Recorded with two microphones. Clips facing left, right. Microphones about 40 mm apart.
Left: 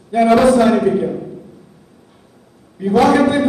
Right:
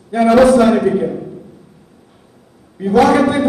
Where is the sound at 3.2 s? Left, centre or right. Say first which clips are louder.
Even; centre.